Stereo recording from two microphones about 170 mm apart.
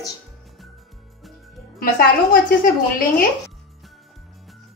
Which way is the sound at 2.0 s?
60° left (ahead or behind).